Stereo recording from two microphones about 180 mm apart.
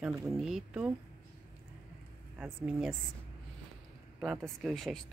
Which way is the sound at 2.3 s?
5° right (ahead or behind).